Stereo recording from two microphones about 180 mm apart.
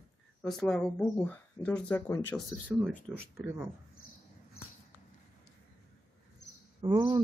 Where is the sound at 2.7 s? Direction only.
5° right (ahead or behind).